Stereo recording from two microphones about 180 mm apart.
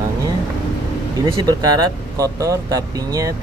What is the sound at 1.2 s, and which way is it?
Speech, 20° right (ahead or behind).